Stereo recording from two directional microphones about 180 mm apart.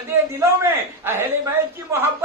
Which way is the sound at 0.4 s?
15° right (ahead or behind).